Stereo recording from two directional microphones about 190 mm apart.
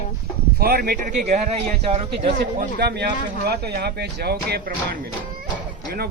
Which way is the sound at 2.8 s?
60° right (ahead or behind).